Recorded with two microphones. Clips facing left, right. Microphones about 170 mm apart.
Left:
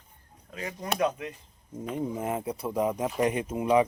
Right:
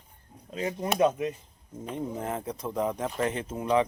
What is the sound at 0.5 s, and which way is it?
Speech, 25° right (ahead or behind).